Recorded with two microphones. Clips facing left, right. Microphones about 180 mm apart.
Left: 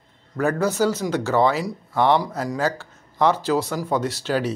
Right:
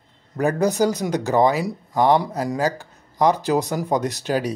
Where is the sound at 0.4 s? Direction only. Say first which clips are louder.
Right 1 dB; 15° right (ahead or behind).